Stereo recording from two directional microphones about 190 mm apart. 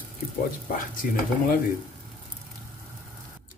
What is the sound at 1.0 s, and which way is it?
Speech, 45° left (ahead or behind).